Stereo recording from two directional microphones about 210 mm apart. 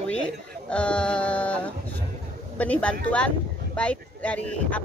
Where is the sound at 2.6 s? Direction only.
5° left (ahead or behind).